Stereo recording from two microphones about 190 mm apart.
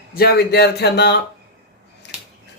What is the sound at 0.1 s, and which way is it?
Speech, 55° left (ahead or behind).